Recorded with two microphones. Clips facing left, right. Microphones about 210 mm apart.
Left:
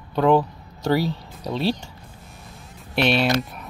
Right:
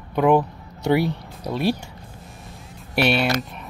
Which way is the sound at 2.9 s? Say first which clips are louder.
Even; 5° right (ahead or behind).